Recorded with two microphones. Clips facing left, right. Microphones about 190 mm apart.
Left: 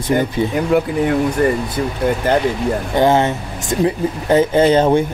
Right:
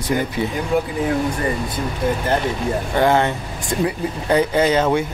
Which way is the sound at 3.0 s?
20° left (ahead or behind).